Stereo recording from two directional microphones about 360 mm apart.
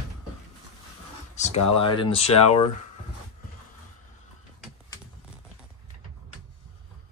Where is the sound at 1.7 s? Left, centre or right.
Centre.